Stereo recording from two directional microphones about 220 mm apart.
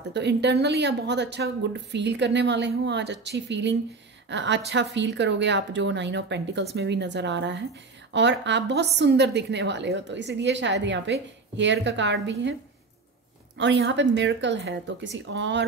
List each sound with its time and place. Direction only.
0.1 s a woman's voice: 50° right (ahead or behind)
13.6 s a woman's voice: 55° right (ahead or behind)